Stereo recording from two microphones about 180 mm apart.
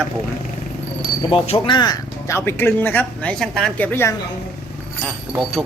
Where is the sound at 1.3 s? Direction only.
30° left (ahead or behind); by 4.1 s 10° left (ahead or behind).